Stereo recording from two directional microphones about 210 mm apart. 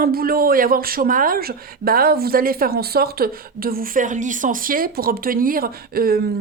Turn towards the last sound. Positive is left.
turn(degrees=-45)  # may be behind; listen again after turning